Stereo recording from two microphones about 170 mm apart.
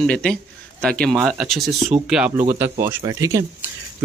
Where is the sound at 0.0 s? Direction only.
5° left (ahead or behind).